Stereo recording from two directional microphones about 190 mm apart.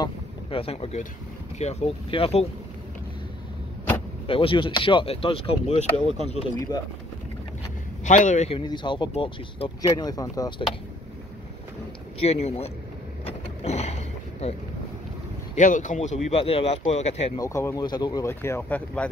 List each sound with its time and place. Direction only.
0.0 s speech: 30° left (ahead or behind)
4.3 s speech: 30° left (ahead or behind)
8.0 s speech: 40° left (ahead or behind); by 10.5 s 20° left (ahead or behind)
12.2 s speech: 35° left (ahead or behind)
13.2 s vehicle: 35° left (ahead or behind)
15.5 s speech: 40° left (ahead or behind)
17.4 s speech: 15° left (ahead or behind)